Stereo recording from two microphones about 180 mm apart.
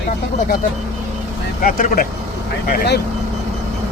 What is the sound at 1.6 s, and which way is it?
Speech, 50° left (ahead or behind).